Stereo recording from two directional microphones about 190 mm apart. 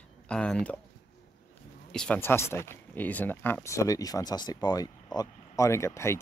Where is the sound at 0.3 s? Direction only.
5° left (ahead or behind).